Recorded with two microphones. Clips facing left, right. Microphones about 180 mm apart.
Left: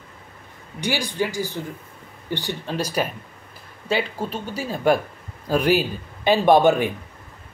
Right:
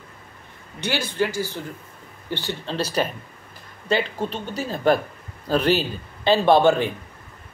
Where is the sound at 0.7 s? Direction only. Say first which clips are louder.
Even; 15° left (ahead or behind).